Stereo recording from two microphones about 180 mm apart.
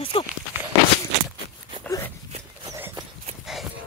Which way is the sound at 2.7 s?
15° right (ahead or behind).